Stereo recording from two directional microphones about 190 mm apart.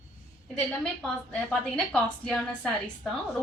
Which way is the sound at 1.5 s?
5° left (ahead or behind).